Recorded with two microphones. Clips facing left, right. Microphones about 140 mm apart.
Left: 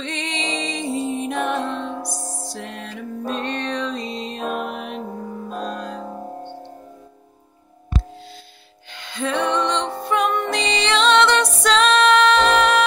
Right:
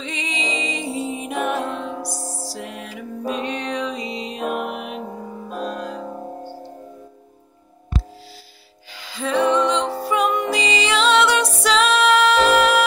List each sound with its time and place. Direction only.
0.0 s music: 5° right (ahead or behind)
2.0 s music: 35° right (ahead or behind)
2.5 s music: 10° right (ahead or behind)
8.9 s music: 5° right (ahead or behind)